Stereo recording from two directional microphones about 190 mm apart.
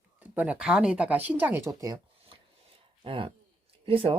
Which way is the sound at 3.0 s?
30° right (ahead or behind).